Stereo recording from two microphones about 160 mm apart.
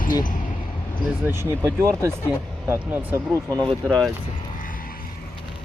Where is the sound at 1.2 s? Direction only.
15° right (ahead or behind).